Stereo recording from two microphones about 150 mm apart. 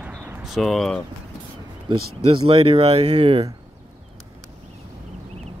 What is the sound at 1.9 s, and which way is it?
Speech, 35° right (ahead or behind).